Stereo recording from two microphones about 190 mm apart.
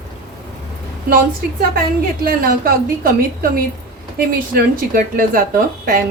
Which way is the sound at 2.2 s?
50° right (ahead or behind).